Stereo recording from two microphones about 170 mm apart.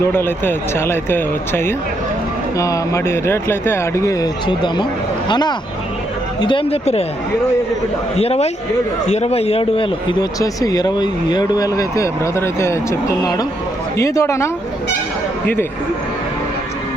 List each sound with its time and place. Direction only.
0.0 s speech: 15° left (ahead or behind); by 7.0 s 35° left (ahead or behind)
8.1 s speech: 35° left (ahead or behind); by 14.5 s 15° left (ahead or behind)